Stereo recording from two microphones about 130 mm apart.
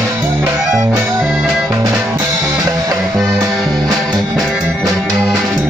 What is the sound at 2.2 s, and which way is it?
Music, 30° right (ahead or behind).